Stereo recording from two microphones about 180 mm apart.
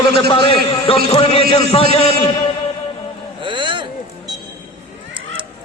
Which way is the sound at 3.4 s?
25° right (ahead or behind).